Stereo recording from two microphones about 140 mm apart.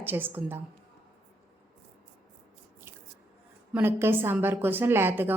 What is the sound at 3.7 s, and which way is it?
A woman's voice, 15° right (ahead or behind).